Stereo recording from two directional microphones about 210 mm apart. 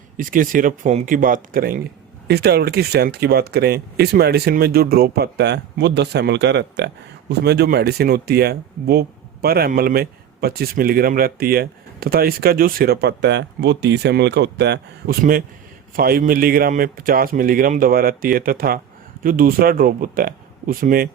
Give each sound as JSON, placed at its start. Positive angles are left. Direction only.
{"t": 0.2, "sound": "speech", "side_deg": -40}